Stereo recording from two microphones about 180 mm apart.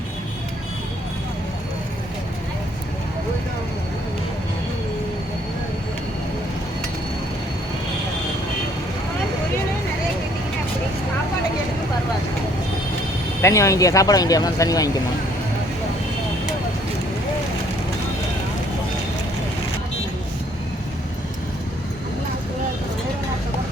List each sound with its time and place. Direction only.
13.4 s speech: 15° left (ahead or behind)